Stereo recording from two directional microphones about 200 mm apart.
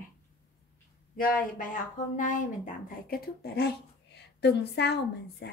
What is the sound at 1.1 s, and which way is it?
Speech, 45° left (ahead or behind).